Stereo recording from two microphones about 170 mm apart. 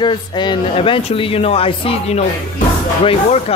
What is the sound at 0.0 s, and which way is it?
Speech, 25° left (ahead or behind).